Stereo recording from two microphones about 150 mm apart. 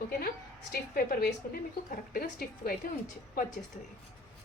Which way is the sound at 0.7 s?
75° left (ahead or behind).